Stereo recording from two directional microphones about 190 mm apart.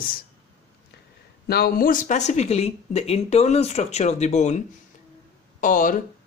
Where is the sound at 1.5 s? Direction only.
55° left (ahead or behind).